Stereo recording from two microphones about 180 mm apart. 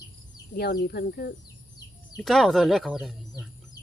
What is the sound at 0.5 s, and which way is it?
Speech, 60° left (ahead or behind).